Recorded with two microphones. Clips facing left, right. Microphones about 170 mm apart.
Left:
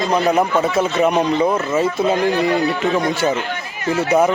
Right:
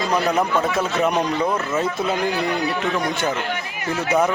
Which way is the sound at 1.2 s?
20° left (ahead or behind).